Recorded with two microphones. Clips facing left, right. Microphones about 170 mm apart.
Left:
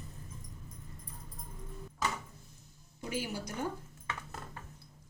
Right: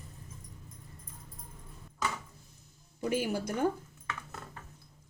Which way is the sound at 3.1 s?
55° right (ahead or behind).